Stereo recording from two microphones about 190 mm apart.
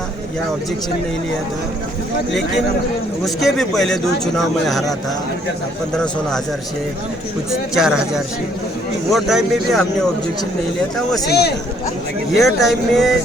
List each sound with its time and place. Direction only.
3.2 s speech: centre (ahead or behind)
7.8 s speech: 5° right (ahead or behind)
11.3 s a man's voice: 60° left (ahead or behind)
12.3 s speech: centre (ahead or behind)